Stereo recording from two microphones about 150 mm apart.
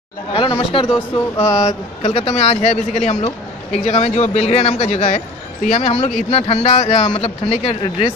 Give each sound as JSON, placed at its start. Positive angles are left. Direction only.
{"t": 0.3, "sound": "speech", "side_deg": 35}
{"t": 1.1, "sound": "a sound", "side_deg": 20}
{"t": 1.6, "sound": "a man's voice", "side_deg": 50}